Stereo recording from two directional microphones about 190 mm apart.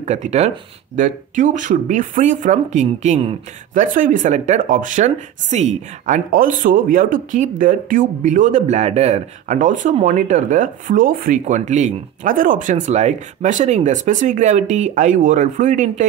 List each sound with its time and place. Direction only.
0.0 s speech: 35° right (ahead or behind)
3.8 s speech: 45° right (ahead or behind)